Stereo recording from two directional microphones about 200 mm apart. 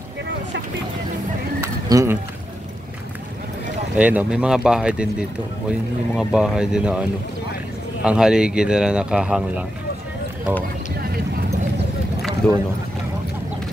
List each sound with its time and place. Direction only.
1.6 s bird: 15° right (ahead or behind)
3.9 s speech: 5° right (ahead or behind)